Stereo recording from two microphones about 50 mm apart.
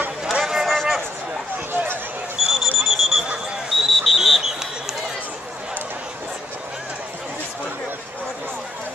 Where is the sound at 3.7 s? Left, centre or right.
Centre.